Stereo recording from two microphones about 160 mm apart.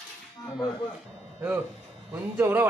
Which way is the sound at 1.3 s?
10° right (ahead or behind).